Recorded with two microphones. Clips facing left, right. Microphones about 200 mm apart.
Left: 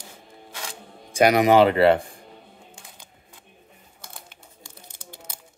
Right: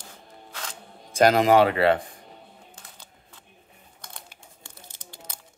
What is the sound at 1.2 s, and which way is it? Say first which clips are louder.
Speech: left 2 dB; 15° left (ahead or behind).